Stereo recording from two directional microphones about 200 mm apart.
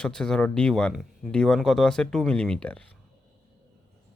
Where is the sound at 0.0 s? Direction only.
5° left (ahead or behind).